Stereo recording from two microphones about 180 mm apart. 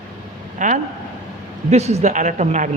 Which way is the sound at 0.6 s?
45° right (ahead or behind).